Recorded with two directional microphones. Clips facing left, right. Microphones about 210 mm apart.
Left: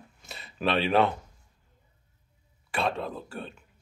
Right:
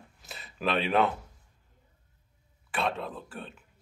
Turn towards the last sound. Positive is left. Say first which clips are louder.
# left 3 dB
turn(degrees=-5)  # may be behind; listen again after turning